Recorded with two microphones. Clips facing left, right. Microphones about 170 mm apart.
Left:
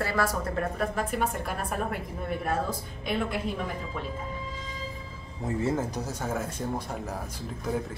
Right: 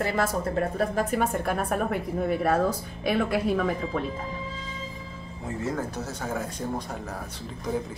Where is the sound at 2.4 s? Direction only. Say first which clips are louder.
Right 4 dB; 75° right (ahead or behind).